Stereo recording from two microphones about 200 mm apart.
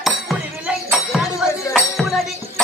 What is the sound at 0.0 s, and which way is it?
Music, centre (ahead or behind).